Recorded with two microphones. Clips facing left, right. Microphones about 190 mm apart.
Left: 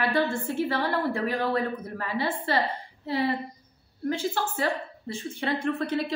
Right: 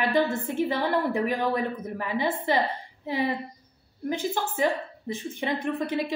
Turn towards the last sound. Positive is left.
turn(degrees=-15)  # may be behind; listen again after turning